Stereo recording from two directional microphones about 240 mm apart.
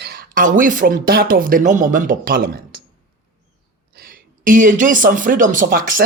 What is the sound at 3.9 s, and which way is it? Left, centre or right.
Speech, right.